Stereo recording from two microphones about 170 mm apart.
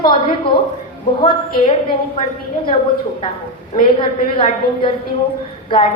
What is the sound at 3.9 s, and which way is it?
A woman's voice, 30° left (ahead or behind).